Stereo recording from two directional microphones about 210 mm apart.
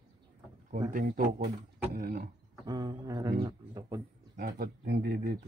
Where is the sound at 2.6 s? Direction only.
20° right (ahead or behind).